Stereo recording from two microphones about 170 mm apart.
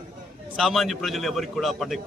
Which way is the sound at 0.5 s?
Centre (ahead or behind).